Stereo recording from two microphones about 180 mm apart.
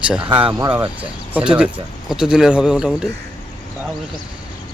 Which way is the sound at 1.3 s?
5° right (ahead or behind).